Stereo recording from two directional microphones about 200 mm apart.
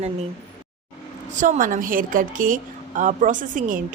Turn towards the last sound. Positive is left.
turn(degrees=-40)  # may be behind; listen again after turning